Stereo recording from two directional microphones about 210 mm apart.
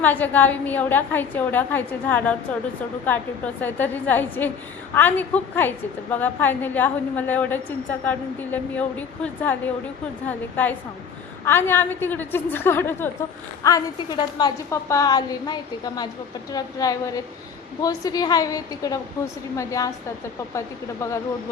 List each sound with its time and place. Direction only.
0.0 s a woman's voice: 10° left (ahead or behind)